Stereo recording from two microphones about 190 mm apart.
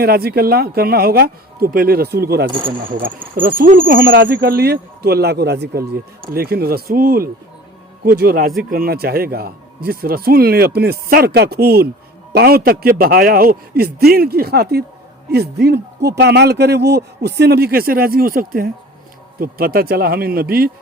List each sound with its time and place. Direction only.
0.0 s a man's voice: 55° right (ahead or behind)